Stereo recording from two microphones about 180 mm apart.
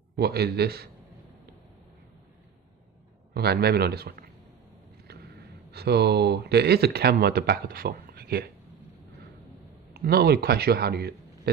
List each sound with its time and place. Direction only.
0.1 s a man's voice: 65° right (ahead or behind)
3.3 s a man's voice: 65° right (ahead or behind)
9.9 s speech: 60° right (ahead or behind)